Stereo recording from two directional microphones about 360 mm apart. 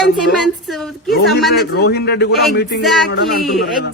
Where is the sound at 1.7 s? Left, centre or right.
Left.